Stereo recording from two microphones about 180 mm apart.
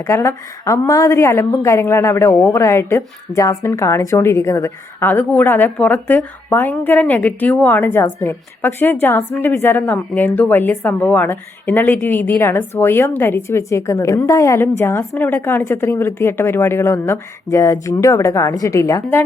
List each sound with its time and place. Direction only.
0.0 s a woman's voice: 15° left (ahead or behind)